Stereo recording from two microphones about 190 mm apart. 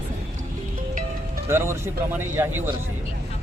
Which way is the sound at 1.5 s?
10° right (ahead or behind).